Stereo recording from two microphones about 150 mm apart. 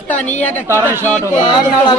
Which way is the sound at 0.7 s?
15° right (ahead or behind).